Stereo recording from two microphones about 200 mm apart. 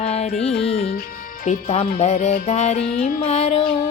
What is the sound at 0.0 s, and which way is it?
Music, 30° left (ahead or behind).